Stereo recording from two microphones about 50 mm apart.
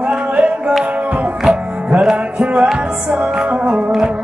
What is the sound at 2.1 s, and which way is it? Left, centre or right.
Music, centre.